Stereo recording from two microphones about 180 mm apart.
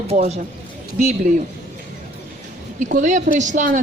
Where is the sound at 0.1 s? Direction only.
40° right (ahead or behind).